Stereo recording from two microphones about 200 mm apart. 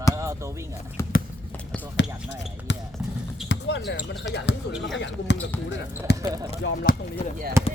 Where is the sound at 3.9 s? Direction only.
65° left (ahead or behind).